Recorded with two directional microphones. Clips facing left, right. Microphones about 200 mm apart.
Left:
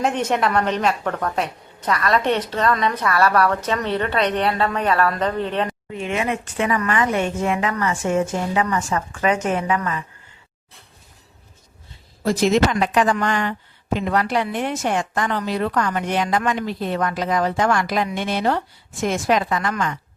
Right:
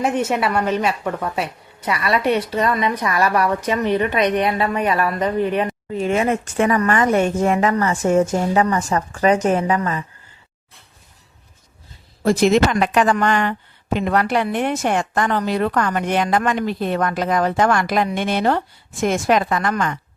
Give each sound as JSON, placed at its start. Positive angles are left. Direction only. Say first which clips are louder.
{"t": 0.0, "sound": "a woman's voice", "louder": "right 1 dB", "side_deg": -5}
{"t": 5.9, "sound": "speech", "louder": "right 9 dB", "side_deg": -40}
{"t": 12.2, "sound": "speech", "louder": "right 2 dB", "side_deg": -55}